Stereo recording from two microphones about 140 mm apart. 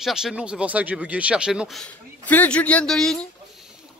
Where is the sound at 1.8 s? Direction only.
10° left (ahead or behind).